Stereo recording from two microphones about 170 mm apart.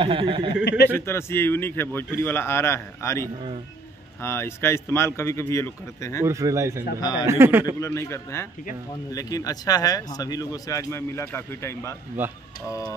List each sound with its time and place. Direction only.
0.0 s speech: 30° right (ahead or behind)
0.9 s a man's voice: 15° left (ahead or behind)
6.2 s speech: 15° right (ahead or behind)
7.0 s speech: 25° left (ahead or behind)
7.2 s speech: 15° right (ahead or behind)
7.8 s a man's voice: 15° left (ahead or behind)
12.2 s speech: 10° right (ahead or behind)
12.6 s a man's voice: 20° left (ahead or behind)